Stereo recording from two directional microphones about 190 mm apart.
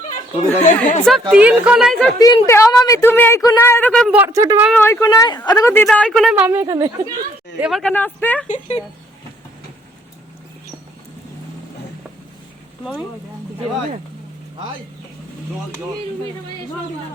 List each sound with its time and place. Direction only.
0.6 s speech: 40° left (ahead or behind)
1.3 s speech: 5° right (ahead or behind)
2.1 s a woman's voice: 20° left (ahead or behind); by 4.2 s 5° left (ahead or behind)
4.2 s speech: 15° right (ahead or behind)
4.7 s a woman's voice: 10° left (ahead or behind); by 7.1 s 20° right (ahead or behind)
7.6 s speech: centre (ahead or behind)
8.4 s speech: 35° left (ahead or behind)
12.8 s speech: centre (ahead or behind)